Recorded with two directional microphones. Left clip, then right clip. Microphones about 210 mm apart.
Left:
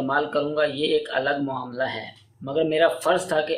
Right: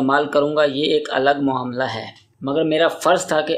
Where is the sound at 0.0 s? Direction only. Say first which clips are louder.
Right 6 dB; 45° right (ahead or behind).